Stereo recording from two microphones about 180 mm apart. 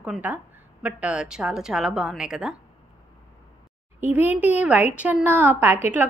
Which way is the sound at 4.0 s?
10° right (ahead or behind).